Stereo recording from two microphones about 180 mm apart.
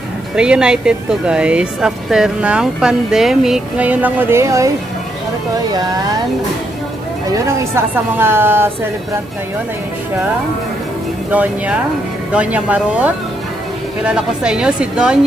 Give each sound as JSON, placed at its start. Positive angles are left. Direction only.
{"t": 0.4, "sound": "speech", "side_deg": -5}
{"t": 7.2, "sound": "speech", "side_deg": -15}
{"t": 11.3, "sound": "speech", "side_deg": -10}